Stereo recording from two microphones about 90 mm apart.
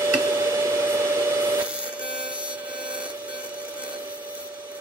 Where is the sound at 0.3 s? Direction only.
30° right (ahead or behind).